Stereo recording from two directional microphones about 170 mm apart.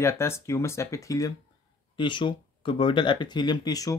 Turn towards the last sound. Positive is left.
turn(degrees=20)  # may be behind; listen again after turning